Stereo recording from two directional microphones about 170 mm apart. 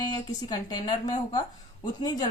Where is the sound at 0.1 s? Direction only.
25° left (ahead or behind).